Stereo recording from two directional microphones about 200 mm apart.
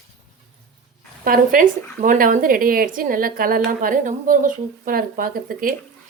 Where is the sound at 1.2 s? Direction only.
45° right (ahead or behind).